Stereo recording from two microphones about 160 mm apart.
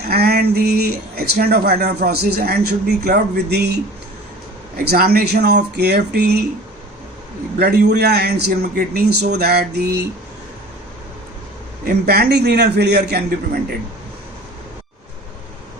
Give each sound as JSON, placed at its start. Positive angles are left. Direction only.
{"t": 0.0, "sound": "speech", "side_deg": -80}
{"t": 4.9, "sound": "a man's voice", "side_deg": -70}
{"t": 7.6, "sound": "a man's voice", "side_deg": -90}
{"t": 11.9, "sound": "a man's voice", "side_deg": -80}